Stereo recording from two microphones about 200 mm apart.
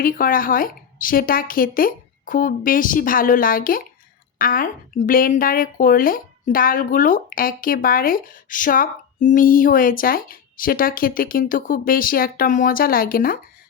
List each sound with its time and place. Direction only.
0.0 s speech: 45° left (ahead or behind)